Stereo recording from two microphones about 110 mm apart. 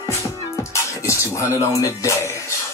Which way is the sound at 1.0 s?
25° left (ahead or behind).